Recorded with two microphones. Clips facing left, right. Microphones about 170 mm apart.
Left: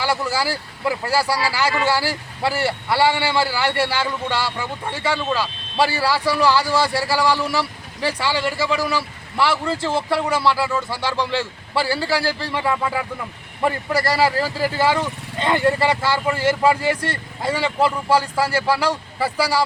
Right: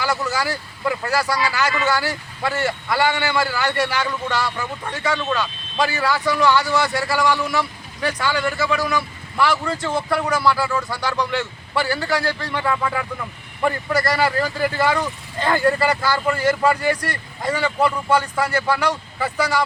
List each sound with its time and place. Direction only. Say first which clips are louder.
0.0 s speech: left 1 dB; 30° left (ahead or behind)
12.7 s speech: even; 20° left (ahead or behind)